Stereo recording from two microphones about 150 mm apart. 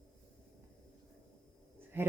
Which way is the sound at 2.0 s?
15° right (ahead or behind).